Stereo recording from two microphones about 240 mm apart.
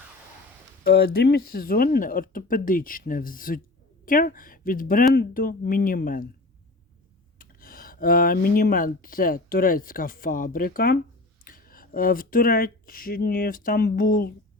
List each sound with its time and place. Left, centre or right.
0.9 s speech: left
7.3 s speech: left